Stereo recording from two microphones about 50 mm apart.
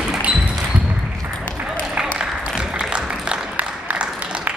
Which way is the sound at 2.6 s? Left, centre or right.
Centre.